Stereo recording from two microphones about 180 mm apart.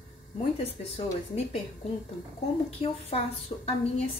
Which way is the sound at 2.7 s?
35° left (ahead or behind).